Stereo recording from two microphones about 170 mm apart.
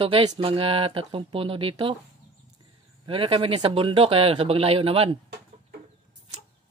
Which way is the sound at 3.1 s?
30° right (ahead or behind).